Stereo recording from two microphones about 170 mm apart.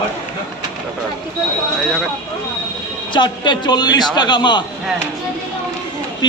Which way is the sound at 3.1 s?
25° left (ahead or behind).